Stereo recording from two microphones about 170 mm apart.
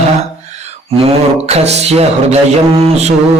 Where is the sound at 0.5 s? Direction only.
40° right (ahead or behind).